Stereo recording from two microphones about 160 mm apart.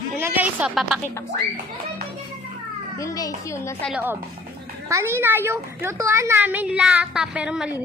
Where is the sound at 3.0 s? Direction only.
20° left (ahead or behind).